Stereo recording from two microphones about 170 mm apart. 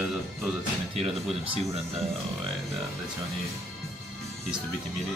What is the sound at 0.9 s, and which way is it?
Speech, 35° right (ahead or behind).